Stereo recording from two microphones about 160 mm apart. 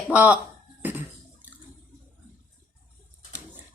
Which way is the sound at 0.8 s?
10° right (ahead or behind).